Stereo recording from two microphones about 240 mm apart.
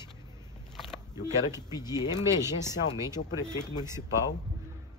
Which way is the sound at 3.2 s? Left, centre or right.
Left.